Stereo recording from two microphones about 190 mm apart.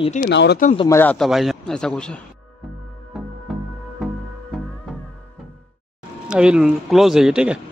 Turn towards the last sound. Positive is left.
turn(degrees=-5)  # may be behind; listen again after turning